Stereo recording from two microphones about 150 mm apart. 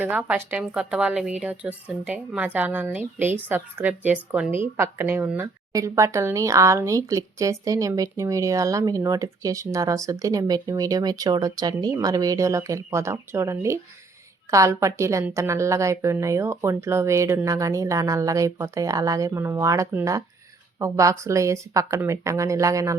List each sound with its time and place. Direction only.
0.0 s a woman's voice: 10° right (ahead or behind)